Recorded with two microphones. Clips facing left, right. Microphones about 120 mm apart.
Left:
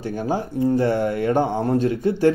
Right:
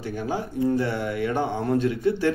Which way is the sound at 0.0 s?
40° left (ahead or behind).